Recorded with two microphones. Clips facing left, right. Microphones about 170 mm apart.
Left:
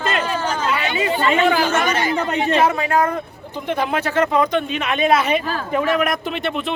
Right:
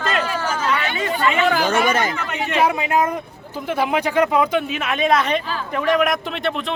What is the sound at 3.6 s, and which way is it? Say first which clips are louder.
Speech: right 1 dB; 10° right (ahead or behind).